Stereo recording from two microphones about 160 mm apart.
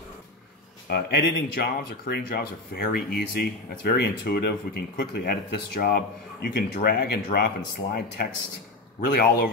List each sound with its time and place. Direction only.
0.8 s speech: 75° left (ahead or behind)
9.0 s speech: 70° left (ahead or behind)